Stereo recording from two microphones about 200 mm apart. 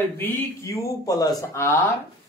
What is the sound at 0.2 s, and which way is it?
Speech, 10° left (ahead or behind).